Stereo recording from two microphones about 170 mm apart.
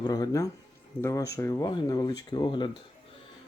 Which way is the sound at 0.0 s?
20° left (ahead or behind).